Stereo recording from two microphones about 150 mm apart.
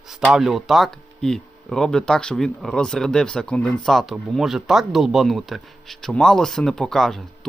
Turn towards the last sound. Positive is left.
turn(degrees=0)  # may be behind; listen again after turning